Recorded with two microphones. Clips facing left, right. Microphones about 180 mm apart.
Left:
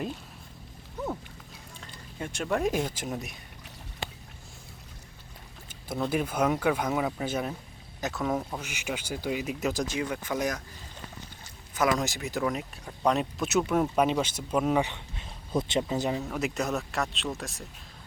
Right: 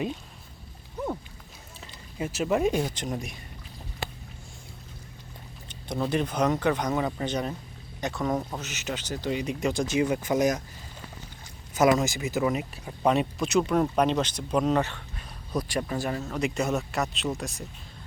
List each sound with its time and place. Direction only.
1.8 s speech: 5° right (ahead or behind)
5.6 s speech: 5° left (ahead or behind)
10.0 s speech: 20° right (ahead or behind)
11.9 s speech: centre (ahead or behind)